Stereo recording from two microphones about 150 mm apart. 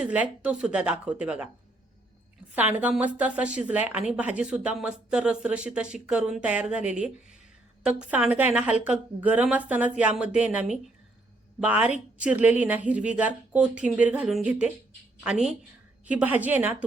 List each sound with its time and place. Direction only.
0.0 s a woman's voice: 10° right (ahead or behind)
2.6 s a woman's voice: 10° right (ahead or behind)